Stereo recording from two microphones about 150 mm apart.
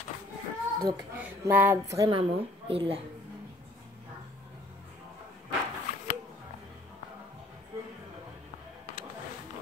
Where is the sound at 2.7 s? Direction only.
40° right (ahead or behind).